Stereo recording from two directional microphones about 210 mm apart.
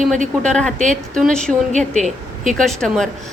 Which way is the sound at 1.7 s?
35° right (ahead or behind).